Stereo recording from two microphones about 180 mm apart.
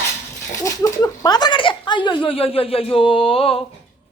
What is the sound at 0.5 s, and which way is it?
Speech, 20° left (ahead or behind).